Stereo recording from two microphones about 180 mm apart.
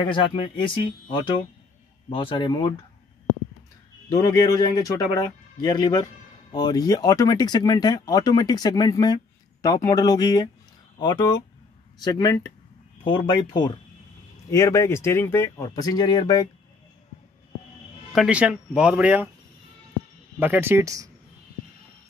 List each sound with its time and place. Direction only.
0.0 s speech: 25° left (ahead or behind)
2.0 s speech: 30° left (ahead or behind)
4.1 s speech: 20° left (ahead or behind)
18.1 s speech: 5° right (ahead or behind)
20.3 s speech: 10° right (ahead or behind)